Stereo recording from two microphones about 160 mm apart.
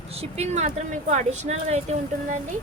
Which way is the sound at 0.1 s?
40° right (ahead or behind).